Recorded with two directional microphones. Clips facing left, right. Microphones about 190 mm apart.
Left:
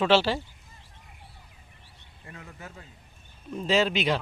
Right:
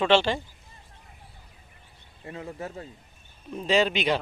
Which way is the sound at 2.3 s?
30° right (ahead or behind).